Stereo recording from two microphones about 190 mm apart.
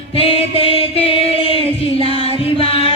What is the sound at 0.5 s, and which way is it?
Music, 30° left (ahead or behind).